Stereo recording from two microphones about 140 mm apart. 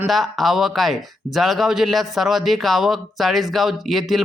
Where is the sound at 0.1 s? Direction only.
Centre (ahead or behind).